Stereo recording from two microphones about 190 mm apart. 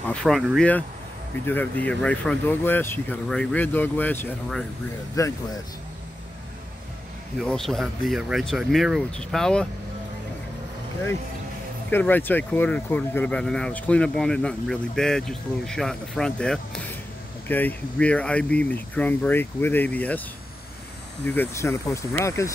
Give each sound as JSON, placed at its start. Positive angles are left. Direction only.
{"t": 0.1, "sound": "speech", "side_deg": 0}
{"t": 1.4, "sound": "speech", "side_deg": 10}
{"t": 5.1, "sound": "speech", "side_deg": 15}
{"t": 7.4, "sound": "speech", "side_deg": 0}
{"t": 11.9, "sound": "speech", "side_deg": 10}
{"t": 21.3, "sound": "speech", "side_deg": 15}